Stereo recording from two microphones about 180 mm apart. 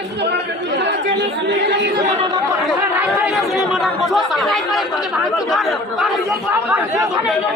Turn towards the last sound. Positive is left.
turn(degrees=0)  # may be behind; listen again after turning